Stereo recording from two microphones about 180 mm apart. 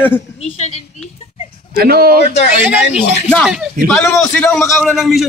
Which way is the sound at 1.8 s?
60° right (ahead or behind).